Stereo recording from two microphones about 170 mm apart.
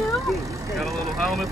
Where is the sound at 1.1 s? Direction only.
Centre (ahead or behind).